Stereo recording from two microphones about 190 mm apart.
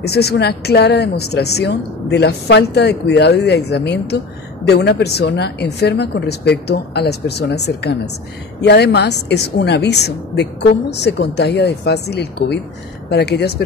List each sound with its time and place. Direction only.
0.0 s a woman's voice: 60° left (ahead or behind)